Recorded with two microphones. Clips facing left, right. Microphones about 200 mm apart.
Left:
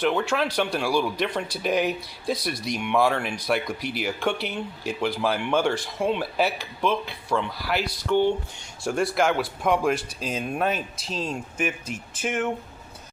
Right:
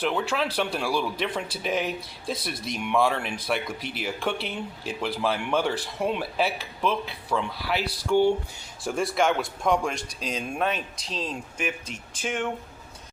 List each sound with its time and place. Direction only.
0.0 s speech: 5° right (ahead or behind)